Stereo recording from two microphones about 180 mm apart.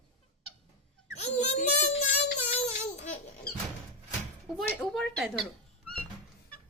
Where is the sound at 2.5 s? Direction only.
40° left (ahead or behind).